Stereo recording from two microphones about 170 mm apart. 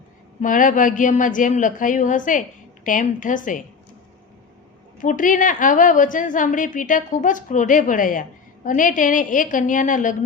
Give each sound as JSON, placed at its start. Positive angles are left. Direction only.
{"t": 0.4, "sound": "a woman's voice", "side_deg": 50}
{"t": 4.9, "sound": "a woman's voice", "side_deg": 50}